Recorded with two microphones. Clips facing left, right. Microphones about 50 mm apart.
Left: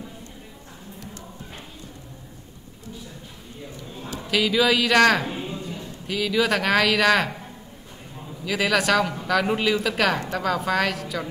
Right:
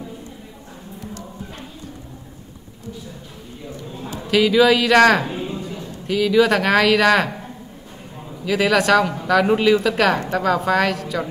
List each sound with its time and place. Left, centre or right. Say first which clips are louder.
4.3 s speech: right 6 dB; centre
5.2 s music: right 4 dB; right
6.0 s speech: right 7 dB; centre
8.5 s speech: right 5 dB; centre